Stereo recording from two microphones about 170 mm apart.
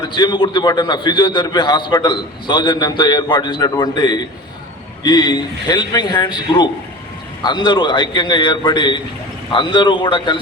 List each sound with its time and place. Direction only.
0.1 s a man's voice: 25° left (ahead or behind)